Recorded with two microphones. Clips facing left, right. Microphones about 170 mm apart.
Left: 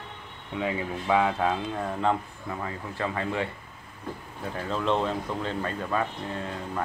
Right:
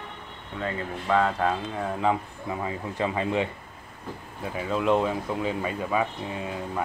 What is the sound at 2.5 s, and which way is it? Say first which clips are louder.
Speech: right 3 dB; 15° right (ahead or behind).